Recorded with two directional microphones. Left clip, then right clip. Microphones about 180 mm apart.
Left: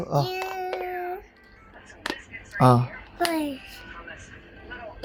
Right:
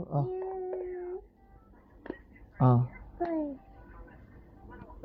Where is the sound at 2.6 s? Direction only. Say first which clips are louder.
Left 10 dB; 25° left (ahead or behind).